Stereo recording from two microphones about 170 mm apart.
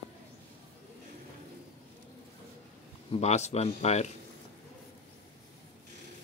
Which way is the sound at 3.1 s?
40° left (ahead or behind).